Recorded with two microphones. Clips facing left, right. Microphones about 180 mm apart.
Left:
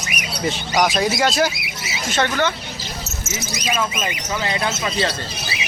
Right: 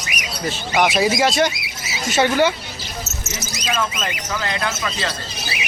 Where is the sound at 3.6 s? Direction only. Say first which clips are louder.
Even; 15° left (ahead or behind).